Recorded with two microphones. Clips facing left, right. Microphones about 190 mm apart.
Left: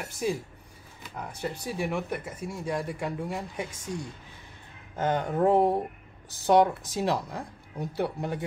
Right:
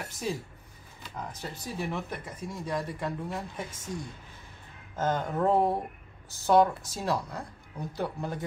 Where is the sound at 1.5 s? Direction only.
10° left (ahead or behind).